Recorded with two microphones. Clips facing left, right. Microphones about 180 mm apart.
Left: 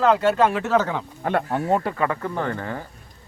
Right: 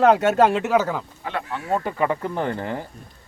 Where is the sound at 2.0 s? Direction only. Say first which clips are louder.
Right 1 dB; 15° right (ahead or behind).